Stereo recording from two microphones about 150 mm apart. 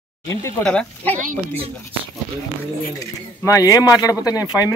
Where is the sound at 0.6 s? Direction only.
5° left (ahead or behind).